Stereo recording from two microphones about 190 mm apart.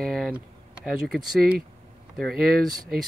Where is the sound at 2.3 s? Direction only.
50° right (ahead or behind).